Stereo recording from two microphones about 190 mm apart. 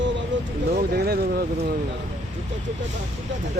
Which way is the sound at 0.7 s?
55° right (ahead or behind).